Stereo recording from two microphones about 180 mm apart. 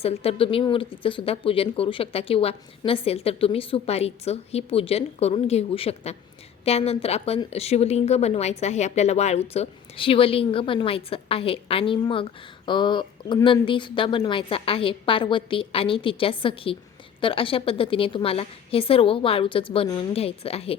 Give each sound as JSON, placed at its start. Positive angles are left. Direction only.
{"t": 0.0, "sound": "a woman's voice", "side_deg": 35}